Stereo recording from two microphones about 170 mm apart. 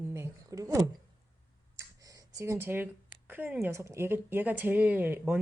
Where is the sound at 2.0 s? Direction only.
20° right (ahead or behind).